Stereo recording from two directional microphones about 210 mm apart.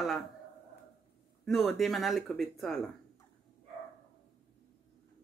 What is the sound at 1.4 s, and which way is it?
Speech, centre (ahead or behind).